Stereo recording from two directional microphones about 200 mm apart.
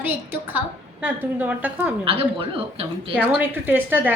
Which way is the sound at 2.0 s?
25° right (ahead or behind).